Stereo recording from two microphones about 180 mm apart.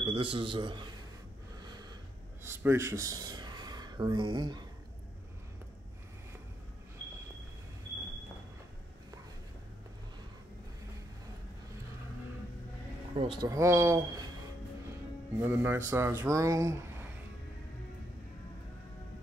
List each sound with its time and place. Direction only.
0.0 s a man's voice: 25° right (ahead or behind)
2.4 s speech: 15° right (ahead or behind)
13.1 s speech: 30° right (ahead or behind)
15.3 s speech: 10° right (ahead or behind)